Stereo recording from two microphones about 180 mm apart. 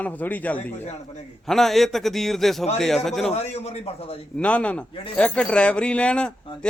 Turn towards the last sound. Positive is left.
turn(degrees=5)  # may be behind; listen again after turning